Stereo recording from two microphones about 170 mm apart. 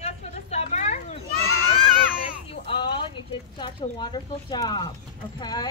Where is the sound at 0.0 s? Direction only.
40° left (ahead or behind).